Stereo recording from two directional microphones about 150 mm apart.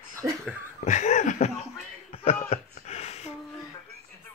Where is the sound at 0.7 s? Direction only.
50° left (ahead or behind).